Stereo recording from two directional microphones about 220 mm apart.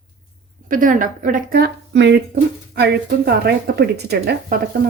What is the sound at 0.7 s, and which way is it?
A woman's voice, 35° right (ahead or behind).